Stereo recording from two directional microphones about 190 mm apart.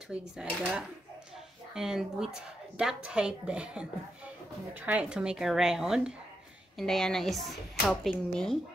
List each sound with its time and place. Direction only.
0.1 s a woman's voice: 5° right (ahead or behind)